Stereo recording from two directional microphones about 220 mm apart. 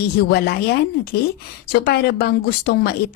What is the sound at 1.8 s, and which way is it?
A woman's voice, 45° left (ahead or behind).